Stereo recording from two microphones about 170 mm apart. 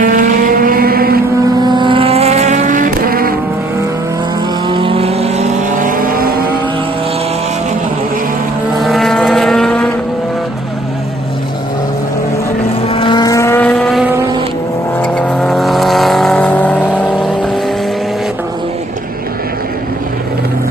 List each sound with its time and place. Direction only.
0.0 s vehicle: 50° right (ahead or behind)
1.6 s vehicle: 25° right (ahead or behind); by 3.3 s 60° right (ahead or behind)
4.6 s vehicle: 30° right (ahead or behind); by 6.3 s 55° right (ahead or behind)
8.7 s vehicle: centre (ahead or behind)
12.8 s vehicle: 30° left (ahead or behind); by 17.3 s 10° left (ahead or behind)